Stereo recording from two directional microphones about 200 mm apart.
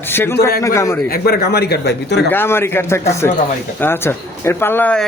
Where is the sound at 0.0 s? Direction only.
10° left (ahead or behind).